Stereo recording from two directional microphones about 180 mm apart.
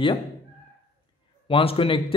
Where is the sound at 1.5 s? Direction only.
30° left (ahead or behind).